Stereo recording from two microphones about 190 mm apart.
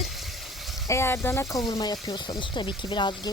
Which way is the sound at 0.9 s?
15° left (ahead or behind).